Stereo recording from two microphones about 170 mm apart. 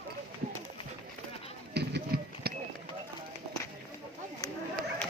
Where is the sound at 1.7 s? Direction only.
75° right (ahead or behind).